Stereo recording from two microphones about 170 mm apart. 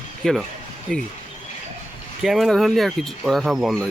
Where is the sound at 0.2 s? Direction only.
Centre (ahead or behind).